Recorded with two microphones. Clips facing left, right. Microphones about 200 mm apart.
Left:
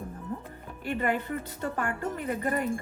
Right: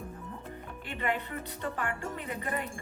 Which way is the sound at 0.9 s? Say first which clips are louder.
Left 5 dB; 45° left (ahead or behind).